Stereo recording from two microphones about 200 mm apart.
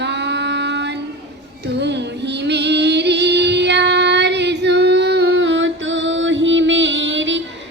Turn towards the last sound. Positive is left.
turn(degrees=-65)  # may be behind; listen again after turning